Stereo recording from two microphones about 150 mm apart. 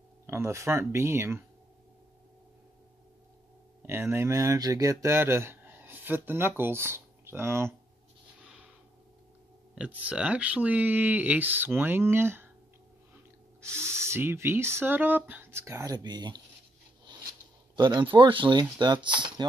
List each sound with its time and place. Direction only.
0.3 s speech: 15° right (ahead or behind)
3.8 s speech: 15° right (ahead or behind)
9.8 s speech: 10° right (ahead or behind)
13.6 s speech: 20° right (ahead or behind)
17.0 s a sound: 30° right (ahead or behind)
19.0 s speech: 30° right (ahead or behind)